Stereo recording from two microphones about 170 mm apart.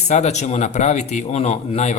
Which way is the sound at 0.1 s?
40° left (ahead or behind).